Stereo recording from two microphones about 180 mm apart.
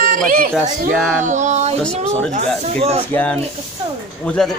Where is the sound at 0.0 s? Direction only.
45° right (ahead or behind).